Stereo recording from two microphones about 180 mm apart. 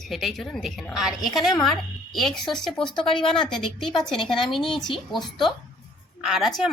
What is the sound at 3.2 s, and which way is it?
A woman's voice, 5° left (ahead or behind).